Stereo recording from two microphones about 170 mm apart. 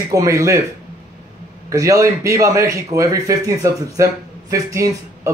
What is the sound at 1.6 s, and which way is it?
A man's voice, 20° right (ahead or behind).